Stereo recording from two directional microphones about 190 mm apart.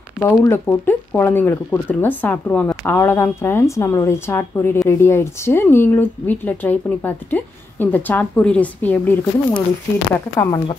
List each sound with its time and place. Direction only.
0.2 s speech: 15° left (ahead or behind)
10.1 s speech: 20° left (ahead or behind)